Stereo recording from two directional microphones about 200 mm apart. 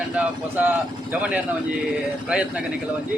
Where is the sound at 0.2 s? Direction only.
10° right (ahead or behind).